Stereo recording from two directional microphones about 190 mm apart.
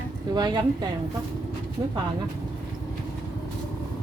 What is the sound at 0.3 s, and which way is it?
Speech, 20° right (ahead or behind).